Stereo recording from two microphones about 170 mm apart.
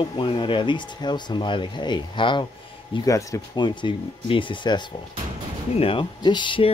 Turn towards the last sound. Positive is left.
turn(degrees=30)  # may be behind; listen again after turning